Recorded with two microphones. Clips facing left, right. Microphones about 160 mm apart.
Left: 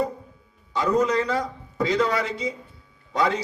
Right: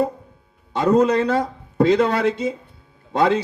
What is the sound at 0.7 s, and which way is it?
A man's voice, 55° right (ahead or behind).